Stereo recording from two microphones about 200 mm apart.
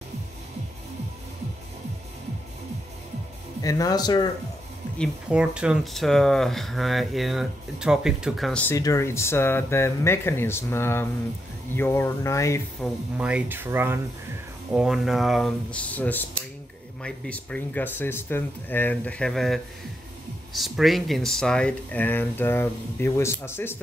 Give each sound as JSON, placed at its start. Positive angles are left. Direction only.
{"t": 3.6, "sound": "a man's voice", "side_deg": 15}
{"t": 4.9, "sound": "speech", "side_deg": 0}
{"t": 12.8, "sound": "speech", "side_deg": -5}